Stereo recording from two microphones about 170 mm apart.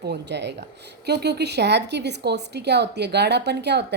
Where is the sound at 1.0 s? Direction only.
80° right.